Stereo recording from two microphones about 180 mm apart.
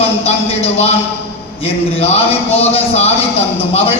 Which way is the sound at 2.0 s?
35° left (ahead or behind).